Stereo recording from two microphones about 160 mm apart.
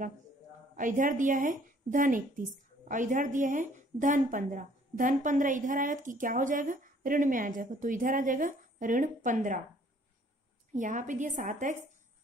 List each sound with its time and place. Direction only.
0.7 s a woman's voice: 55° right (ahead or behind)
10.7 s a woman's voice: 55° right (ahead or behind)